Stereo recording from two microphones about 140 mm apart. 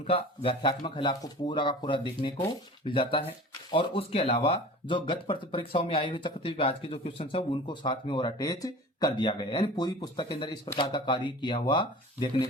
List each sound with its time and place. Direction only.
0.1 s speech: 40° left (ahead or behind)